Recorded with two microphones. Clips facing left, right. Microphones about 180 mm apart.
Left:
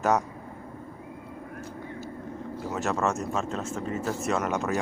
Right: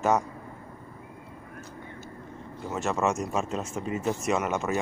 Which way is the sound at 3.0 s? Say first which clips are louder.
Right 1 dB; 10° right (ahead or behind).